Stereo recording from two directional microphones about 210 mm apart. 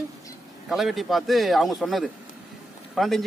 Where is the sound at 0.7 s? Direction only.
Centre (ahead or behind).